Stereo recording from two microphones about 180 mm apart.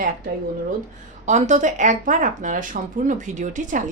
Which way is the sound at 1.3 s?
40° right (ahead or behind).